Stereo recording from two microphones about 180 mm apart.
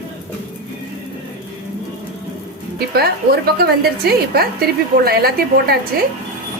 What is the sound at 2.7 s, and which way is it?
A woman's voice, 60° right (ahead or behind).